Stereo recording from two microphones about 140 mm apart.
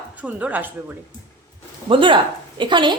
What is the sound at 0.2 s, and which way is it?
Speech, 10° right (ahead or behind).